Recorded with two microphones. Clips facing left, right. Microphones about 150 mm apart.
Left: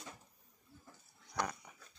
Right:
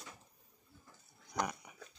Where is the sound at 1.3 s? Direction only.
10° right (ahead or behind).